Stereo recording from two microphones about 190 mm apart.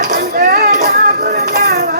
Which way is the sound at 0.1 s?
50° right (ahead or behind).